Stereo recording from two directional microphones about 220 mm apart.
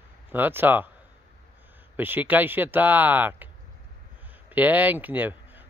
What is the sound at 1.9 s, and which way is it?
Speech, 10° right (ahead or behind).